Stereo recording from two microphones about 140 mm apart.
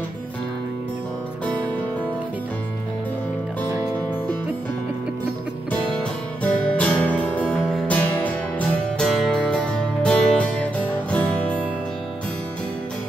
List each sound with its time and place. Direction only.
3.6 s music: 25° right (ahead or behind)
6.4 s music: 10° left (ahead or behind)